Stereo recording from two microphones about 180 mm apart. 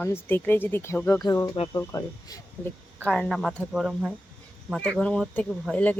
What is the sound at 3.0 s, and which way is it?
Speech, 5° left (ahead or behind).